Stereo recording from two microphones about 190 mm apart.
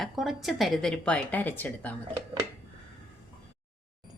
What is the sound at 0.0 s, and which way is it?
Speech, centre (ahead or behind).